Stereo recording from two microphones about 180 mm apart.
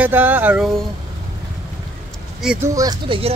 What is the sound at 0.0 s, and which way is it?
Speech, 10° right (ahead or behind).